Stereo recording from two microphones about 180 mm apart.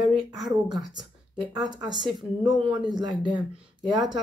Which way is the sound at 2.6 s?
25° right (ahead or behind).